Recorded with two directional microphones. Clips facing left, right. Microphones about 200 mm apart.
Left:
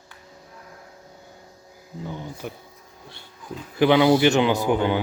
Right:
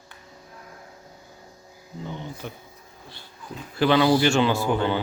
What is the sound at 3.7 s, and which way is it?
Speech, 15° left (ahead or behind).